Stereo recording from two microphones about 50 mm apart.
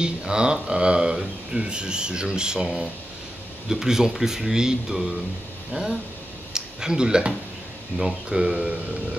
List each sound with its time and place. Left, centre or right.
0.0 s speech: centre